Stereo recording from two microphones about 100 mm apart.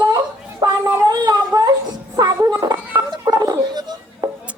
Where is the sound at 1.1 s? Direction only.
40° right (ahead or behind).